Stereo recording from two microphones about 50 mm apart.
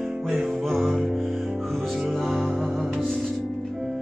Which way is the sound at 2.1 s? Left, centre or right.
Centre.